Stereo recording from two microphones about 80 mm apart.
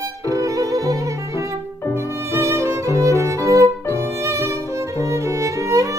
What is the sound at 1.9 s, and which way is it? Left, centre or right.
Music, right.